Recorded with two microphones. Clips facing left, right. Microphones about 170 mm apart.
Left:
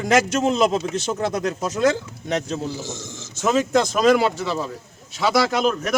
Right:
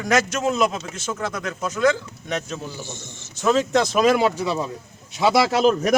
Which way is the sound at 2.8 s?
90° left.